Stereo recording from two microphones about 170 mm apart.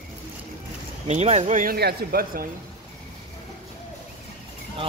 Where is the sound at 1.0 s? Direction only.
40° right (ahead or behind); by 2.4 s 65° right (ahead or behind).